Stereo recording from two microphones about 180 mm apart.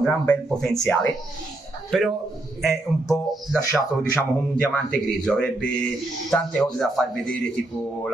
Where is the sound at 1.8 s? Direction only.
Centre (ahead or behind).